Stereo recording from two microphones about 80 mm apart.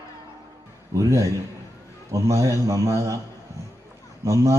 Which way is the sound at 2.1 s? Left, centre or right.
Right.